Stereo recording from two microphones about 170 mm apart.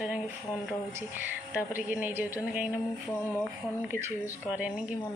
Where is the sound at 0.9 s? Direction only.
10° right (ahead or behind).